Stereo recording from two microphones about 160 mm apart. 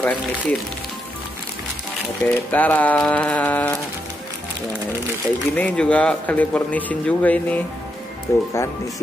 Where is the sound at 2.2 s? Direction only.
10° left (ahead or behind).